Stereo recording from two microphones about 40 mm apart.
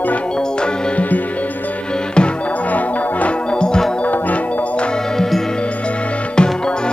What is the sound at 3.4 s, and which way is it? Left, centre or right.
Music, left.